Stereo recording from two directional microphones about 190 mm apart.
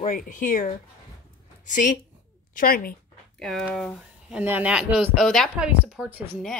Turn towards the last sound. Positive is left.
turn(degrees=0)  # may be behind; listen again after turning